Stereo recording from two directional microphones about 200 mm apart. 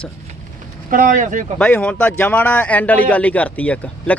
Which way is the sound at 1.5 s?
5° left (ahead or behind).